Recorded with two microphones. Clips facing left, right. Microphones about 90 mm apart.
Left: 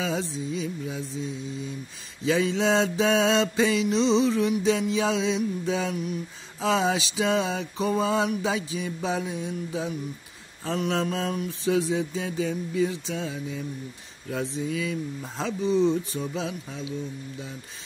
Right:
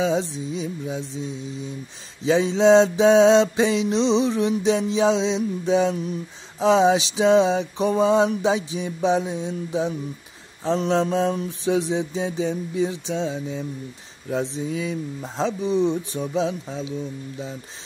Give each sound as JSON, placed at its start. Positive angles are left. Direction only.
{"t": 0.0, "sound": "mantra", "side_deg": -20}